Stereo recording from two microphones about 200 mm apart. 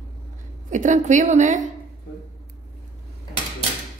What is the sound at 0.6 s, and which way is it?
A woman's voice, 40° right (ahead or behind).